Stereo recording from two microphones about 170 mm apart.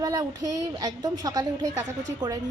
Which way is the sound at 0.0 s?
20° right (ahead or behind).